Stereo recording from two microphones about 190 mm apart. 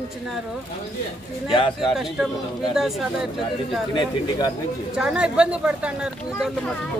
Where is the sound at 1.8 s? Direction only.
Centre (ahead or behind).